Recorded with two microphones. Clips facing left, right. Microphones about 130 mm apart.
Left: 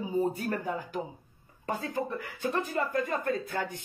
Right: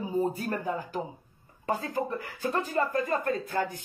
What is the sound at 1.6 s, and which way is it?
Speech, 35° right (ahead or behind).